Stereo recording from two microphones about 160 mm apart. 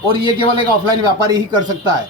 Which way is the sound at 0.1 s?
30° right (ahead or behind).